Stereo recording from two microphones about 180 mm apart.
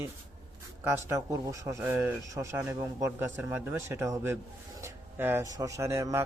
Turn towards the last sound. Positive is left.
turn(degrees=-15)  # may be behind; listen again after turning